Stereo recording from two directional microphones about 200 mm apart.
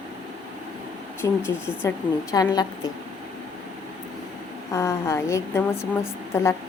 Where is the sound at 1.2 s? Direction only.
10° left (ahead or behind).